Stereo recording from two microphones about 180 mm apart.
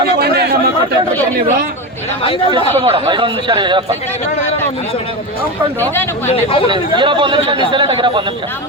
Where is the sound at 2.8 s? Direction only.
30° right (ahead or behind).